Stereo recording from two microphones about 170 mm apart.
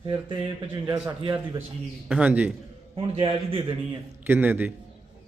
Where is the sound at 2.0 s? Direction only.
5° right (ahead or behind).